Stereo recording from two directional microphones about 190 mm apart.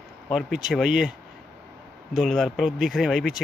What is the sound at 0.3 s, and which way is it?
Speech, centre (ahead or behind).